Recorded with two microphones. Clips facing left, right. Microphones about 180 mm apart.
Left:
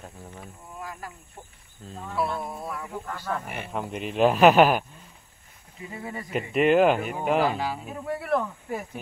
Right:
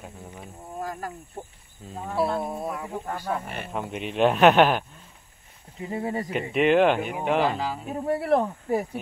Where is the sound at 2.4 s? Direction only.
25° right (ahead or behind).